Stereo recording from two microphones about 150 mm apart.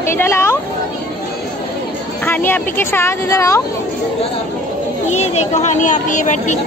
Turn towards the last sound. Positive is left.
turn(degrees=55)  # may be behind; listen again after turning